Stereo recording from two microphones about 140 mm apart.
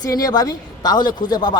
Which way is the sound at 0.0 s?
25° left (ahead or behind).